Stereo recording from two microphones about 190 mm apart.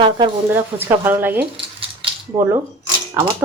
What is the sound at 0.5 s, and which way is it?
Speech, 10° right (ahead or behind).